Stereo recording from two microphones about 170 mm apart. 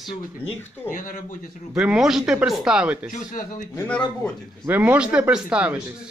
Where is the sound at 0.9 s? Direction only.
55° left (ahead or behind).